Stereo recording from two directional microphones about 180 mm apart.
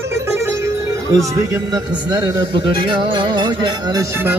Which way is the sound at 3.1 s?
25° right (ahead or behind).